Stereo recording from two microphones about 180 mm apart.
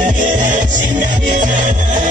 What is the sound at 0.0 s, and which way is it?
Music, 45° right (ahead or behind).